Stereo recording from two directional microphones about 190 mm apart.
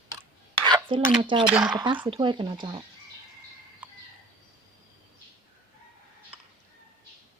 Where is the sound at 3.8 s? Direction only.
10° right (ahead or behind).